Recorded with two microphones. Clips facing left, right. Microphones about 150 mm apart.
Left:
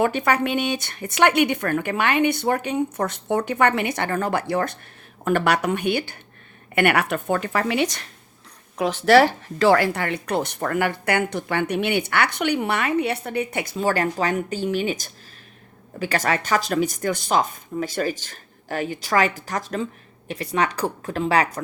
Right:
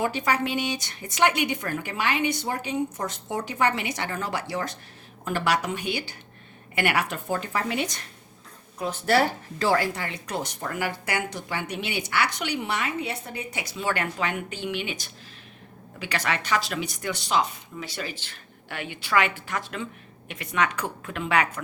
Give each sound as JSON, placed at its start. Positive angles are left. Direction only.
{"t": 0.0, "sound": "speech", "side_deg": 60}
{"t": 13.7, "sound": "speech", "side_deg": 40}